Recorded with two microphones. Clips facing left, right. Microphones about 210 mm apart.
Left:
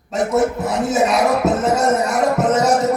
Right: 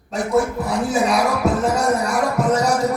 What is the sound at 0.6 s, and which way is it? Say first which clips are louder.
Speech: left 2 dB; 20° left (ahead or behind).